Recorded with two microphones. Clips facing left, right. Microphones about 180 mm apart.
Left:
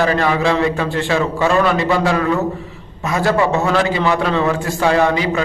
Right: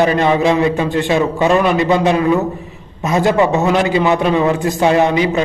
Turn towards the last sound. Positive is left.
turn(degrees=-20)  # may be behind; listen again after turning